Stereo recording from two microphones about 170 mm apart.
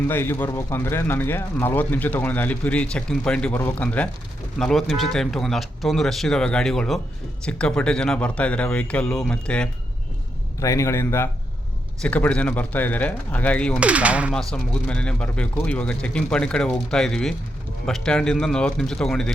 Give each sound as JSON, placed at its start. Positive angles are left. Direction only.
{"t": 0.1, "sound": "speech", "side_deg": 15}
{"t": 10.6, "sound": "speech", "side_deg": 15}
{"t": 13.7, "sound": "speech", "side_deg": -10}
{"t": 14.3, "sound": "speech", "side_deg": 5}